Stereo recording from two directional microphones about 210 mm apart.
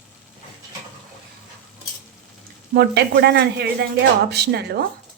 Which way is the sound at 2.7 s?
50° right (ahead or behind).